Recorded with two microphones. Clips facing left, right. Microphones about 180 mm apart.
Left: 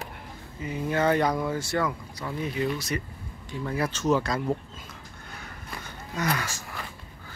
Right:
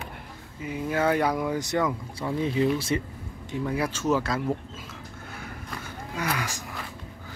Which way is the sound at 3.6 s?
10° right (ahead or behind).